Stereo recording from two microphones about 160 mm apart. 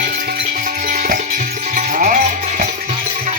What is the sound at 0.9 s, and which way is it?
Music, 55° right (ahead or behind).